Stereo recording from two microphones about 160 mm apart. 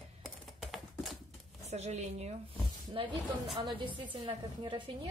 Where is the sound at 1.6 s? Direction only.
45° right (ahead or behind).